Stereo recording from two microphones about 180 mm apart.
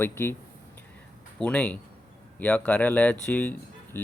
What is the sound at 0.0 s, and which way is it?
Speech, 15° left (ahead or behind).